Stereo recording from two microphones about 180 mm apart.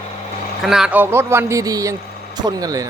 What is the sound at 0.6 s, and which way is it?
A man's voice, 5° right (ahead or behind).